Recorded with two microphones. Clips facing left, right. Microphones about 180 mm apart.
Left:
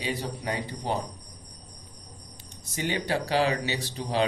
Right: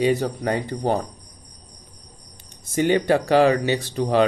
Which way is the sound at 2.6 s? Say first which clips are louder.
Right 11 dB; 50° right (ahead or behind).